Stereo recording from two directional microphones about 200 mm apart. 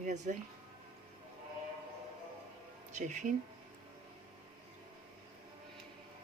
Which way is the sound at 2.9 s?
35° right (ahead or behind).